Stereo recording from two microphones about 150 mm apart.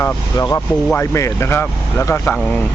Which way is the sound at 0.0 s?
20° left (ahead or behind).